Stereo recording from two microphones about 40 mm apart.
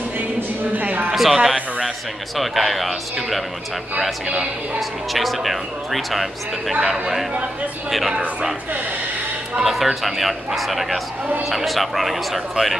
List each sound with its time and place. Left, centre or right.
0.7 s a sound: right
1.1 s speech: centre
4.7 s speech: centre
9.6 s speech: centre